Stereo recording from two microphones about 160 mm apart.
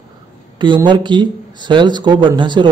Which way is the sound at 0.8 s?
30° right (ahead or behind).